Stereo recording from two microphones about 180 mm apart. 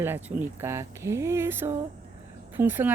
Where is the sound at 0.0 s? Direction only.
10° right (ahead or behind).